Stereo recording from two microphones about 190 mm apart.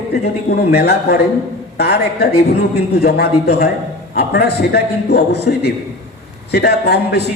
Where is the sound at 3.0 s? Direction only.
55° left (ahead or behind).